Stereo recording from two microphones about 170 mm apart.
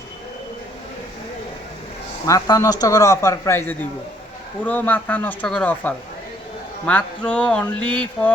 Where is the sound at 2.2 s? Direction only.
20° left (ahead or behind).